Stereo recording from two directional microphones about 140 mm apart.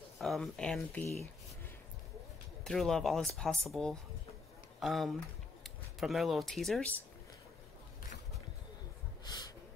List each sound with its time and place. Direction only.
0.2 s speech: centre (ahead or behind)
2.6 s speech: 5° left (ahead or behind)
9.2 s snort: 30° left (ahead or behind)